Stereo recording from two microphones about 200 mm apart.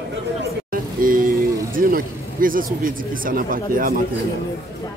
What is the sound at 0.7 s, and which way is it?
Speech, 45° right (ahead or behind).